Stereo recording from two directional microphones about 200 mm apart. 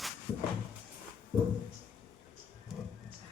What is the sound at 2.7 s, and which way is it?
Music, centre (ahead or behind).